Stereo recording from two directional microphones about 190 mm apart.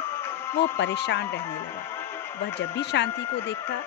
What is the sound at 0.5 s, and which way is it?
Speech, 65° left (ahead or behind).